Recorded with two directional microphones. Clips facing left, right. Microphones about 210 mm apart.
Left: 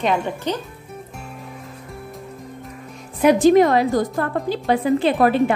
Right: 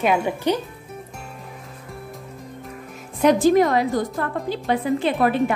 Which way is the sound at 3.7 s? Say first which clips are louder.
Left 3 dB; 35° left (ahead or behind).